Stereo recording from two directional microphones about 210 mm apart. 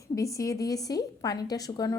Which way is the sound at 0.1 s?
15° left (ahead or behind).